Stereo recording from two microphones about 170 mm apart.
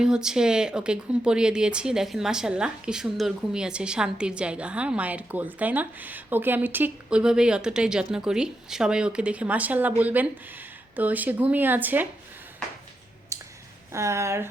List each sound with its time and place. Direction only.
0.0 s speech: 5° right (ahead or behind)
13.3 s a sound: 20° right (ahead or behind)
13.9 s speech: 15° right (ahead or behind)